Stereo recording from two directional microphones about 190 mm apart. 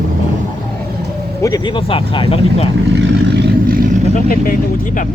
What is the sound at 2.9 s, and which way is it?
Vehicle, 55° right (ahead or behind).